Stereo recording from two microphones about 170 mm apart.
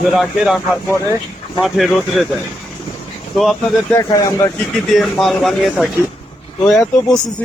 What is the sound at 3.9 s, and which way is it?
Speech, 15° left (ahead or behind).